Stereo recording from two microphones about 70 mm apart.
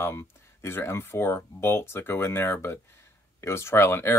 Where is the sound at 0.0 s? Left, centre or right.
Left.